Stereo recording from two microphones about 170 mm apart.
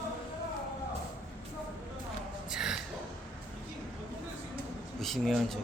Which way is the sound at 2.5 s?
5° right (ahead or behind).